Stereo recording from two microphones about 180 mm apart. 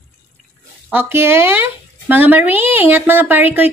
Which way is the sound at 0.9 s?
15° right (ahead or behind).